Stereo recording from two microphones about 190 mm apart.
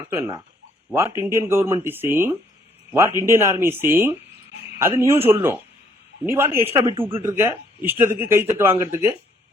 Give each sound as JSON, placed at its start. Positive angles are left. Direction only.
{"t": 0.1, "sound": "a man's voice", "side_deg": -15}
{"t": 6.8, "sound": "speech", "side_deg": -30}
{"t": 7.1, "sound": "a man's voice", "side_deg": -15}